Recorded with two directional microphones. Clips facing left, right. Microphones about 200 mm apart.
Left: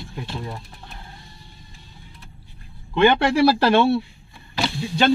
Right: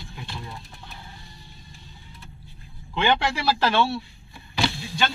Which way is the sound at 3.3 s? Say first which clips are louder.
Left 7 dB; 55° left (ahead or behind).